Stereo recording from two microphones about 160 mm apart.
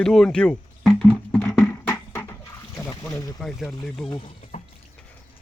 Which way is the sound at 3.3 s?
Centre (ahead or behind).